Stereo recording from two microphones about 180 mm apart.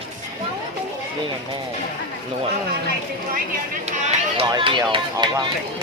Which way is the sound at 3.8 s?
35° right (ahead or behind).